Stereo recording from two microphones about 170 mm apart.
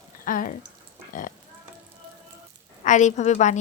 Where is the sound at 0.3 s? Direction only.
55° left (ahead or behind).